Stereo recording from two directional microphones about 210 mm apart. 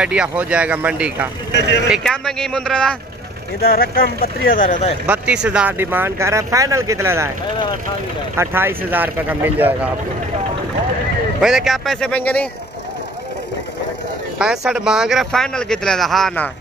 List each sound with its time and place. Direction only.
0.0 s speech: 5° right (ahead or behind)
1.5 s speech: 55° left (ahead or behind)
1.9 s speech: centre (ahead or behind)
3.6 s speech: 45° left (ahead or behind)
5.0 s speech: 5° right (ahead or behind)
8.4 s speech: 10° right (ahead or behind)
11.4 s speech: centre (ahead or behind)
14.4 s speech: 5° right (ahead or behind)